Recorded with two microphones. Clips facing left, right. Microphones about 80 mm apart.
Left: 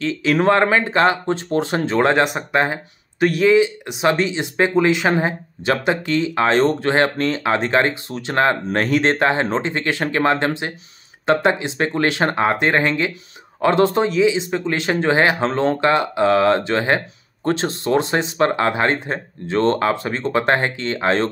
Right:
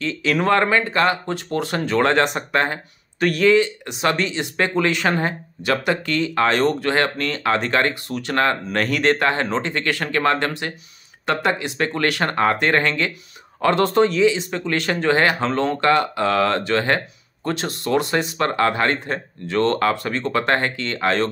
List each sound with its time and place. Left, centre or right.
0.0 s speech: left